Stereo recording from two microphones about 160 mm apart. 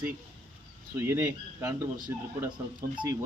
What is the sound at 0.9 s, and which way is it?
Speech, 15° right (ahead or behind).